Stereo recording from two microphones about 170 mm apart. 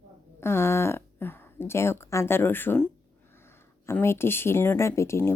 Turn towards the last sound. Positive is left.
turn(degrees=15)  # may be behind; listen again after turning